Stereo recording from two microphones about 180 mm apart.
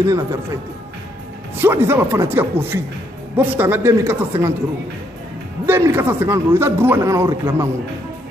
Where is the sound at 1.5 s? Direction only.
10° right (ahead or behind).